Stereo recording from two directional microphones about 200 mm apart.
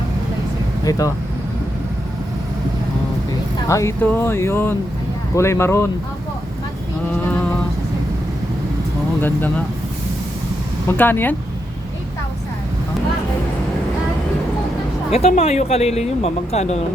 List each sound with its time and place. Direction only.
0.9 s speech: 15° left (ahead or behind)
3.7 s speech: 15° left (ahead or behind)
10.9 s speech: 10° left (ahead or behind)
15.1 s speech: 30° left (ahead or behind)